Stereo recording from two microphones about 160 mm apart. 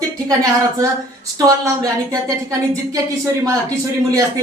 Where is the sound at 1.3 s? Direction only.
20° right (ahead or behind).